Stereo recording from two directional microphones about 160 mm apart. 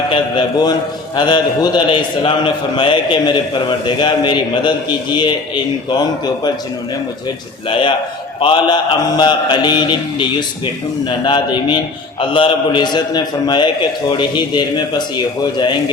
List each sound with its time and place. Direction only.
0.1 s a man's voice: 25° left (ahead or behind)
5.9 s a man's voice: 25° left (ahead or behind)
7.7 s a man's voice: 30° left (ahead or behind)